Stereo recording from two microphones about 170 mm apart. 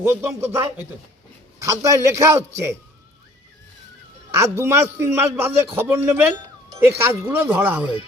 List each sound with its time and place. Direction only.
0.0 s a man's voice: 15° right (ahead or behind)
1.6 s a man's voice: 20° right (ahead or behind)
4.4 s a man's voice: 15° right (ahead or behind)